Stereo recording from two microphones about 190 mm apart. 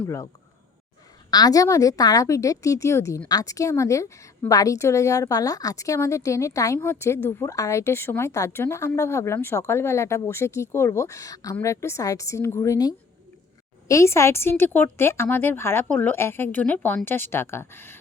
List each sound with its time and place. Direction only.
0.0 s a woman's voice: 15° left (ahead or behind)
1.3 s a woman's voice: 20° left (ahead or behind)